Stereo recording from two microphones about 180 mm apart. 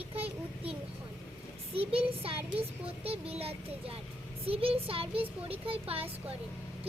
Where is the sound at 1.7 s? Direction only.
30° right (ahead or behind).